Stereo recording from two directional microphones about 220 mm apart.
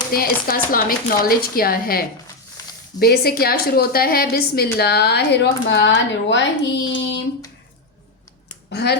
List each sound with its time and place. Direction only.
0.1 s a woman's voice: 40° left (ahead or behind)
8.7 s speech: 50° left (ahead or behind)